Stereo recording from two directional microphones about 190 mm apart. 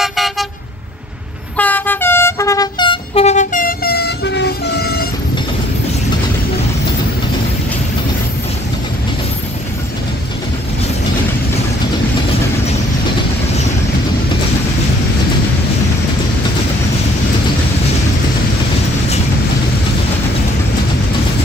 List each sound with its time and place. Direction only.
0.0 s toot: centre (ahead or behind)
1.6 s train: 10° left (ahead or behind); by 5.0 s 60° left (ahead or behind)